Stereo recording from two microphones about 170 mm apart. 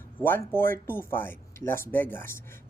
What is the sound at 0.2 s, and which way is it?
A woman's voice, 10° left (ahead or behind).